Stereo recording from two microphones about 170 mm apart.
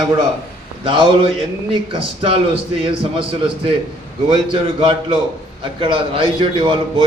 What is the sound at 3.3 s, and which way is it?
A man's voice, 30° right (ahead or behind).